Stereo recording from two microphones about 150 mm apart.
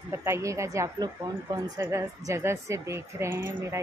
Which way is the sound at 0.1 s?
15° right (ahead or behind).